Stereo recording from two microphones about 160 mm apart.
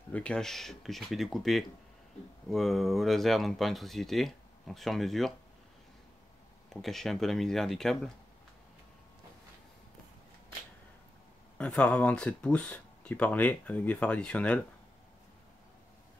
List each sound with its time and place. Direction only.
0.1 s speech: 5° left (ahead or behind)
6.7 s speech: centre (ahead or behind)
11.5 s speech: 5° left (ahead or behind)